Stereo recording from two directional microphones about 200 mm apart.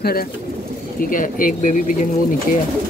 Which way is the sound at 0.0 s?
50° left (ahead or behind).